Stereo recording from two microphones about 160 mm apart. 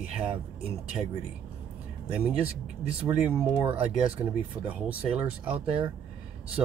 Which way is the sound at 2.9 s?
10° right (ahead or behind).